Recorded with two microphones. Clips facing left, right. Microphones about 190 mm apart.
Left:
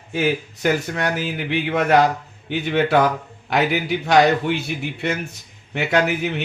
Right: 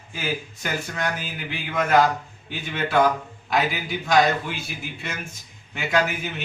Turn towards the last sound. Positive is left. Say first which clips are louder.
# left 4 dB
turn(degrees=65)  # may be behind; listen again after turning